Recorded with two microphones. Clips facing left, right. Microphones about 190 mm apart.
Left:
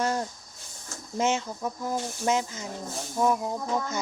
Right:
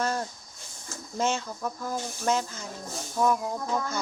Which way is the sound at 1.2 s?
20° left (ahead or behind).